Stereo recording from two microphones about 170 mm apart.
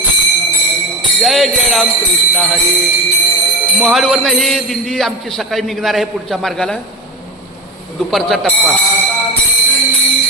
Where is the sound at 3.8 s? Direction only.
Centre (ahead or behind).